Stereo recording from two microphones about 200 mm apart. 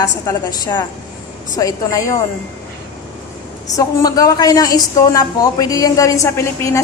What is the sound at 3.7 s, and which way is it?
Speech, 15° left (ahead or behind).